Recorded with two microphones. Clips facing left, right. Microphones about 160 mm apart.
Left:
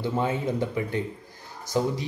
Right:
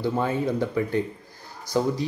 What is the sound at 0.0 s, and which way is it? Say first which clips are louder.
Speech: right 2 dB; 20° left (ahead or behind).